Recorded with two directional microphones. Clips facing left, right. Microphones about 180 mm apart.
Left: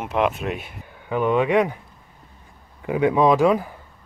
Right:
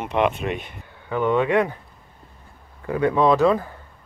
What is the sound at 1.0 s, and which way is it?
Speech, 15° left (ahead or behind).